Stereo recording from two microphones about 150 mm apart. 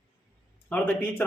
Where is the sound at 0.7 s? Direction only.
10° left (ahead or behind).